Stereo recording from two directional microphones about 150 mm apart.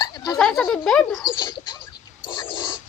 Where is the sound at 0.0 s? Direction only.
25° left (ahead or behind).